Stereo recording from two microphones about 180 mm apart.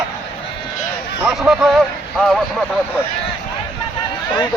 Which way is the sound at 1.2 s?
Centre (ahead or behind).